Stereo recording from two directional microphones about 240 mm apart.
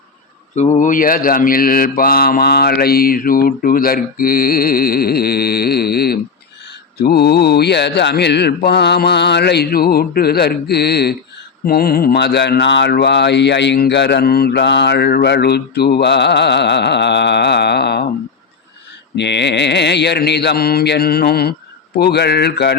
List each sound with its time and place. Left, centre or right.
0.5 s mantra: left
6.7 s speech: left
19.1 s speech: left